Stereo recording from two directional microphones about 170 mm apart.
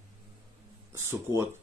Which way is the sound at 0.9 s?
15° right (ahead or behind).